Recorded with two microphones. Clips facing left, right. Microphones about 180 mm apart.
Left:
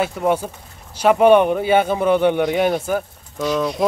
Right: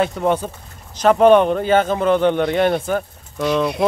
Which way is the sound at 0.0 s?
10° left (ahead or behind).